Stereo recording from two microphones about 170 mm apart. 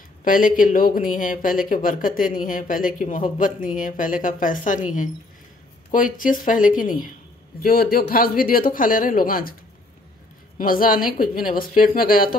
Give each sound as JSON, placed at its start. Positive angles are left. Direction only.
{"t": 0.2, "sound": "speech", "side_deg": 55}
{"t": 10.6, "sound": "speech", "side_deg": 55}